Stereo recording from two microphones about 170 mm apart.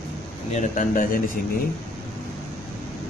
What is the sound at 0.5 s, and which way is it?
Speech, 50° left (ahead or behind).